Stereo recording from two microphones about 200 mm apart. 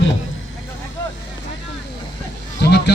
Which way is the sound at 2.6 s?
55° left (ahead or behind).